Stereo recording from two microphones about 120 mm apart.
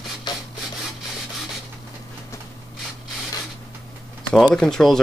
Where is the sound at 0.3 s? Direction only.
40° left (ahead or behind).